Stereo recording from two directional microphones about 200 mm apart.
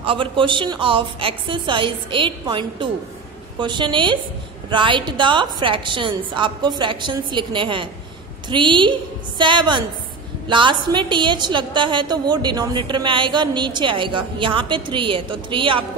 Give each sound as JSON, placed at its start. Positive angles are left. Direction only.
{"t": 0.0, "sound": "a woman's voice", "side_deg": -25}